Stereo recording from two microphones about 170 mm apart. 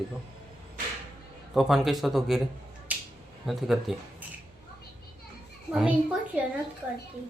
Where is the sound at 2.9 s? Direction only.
10° right (ahead or behind).